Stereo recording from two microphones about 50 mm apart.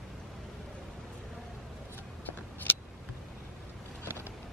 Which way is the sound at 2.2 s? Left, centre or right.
Left.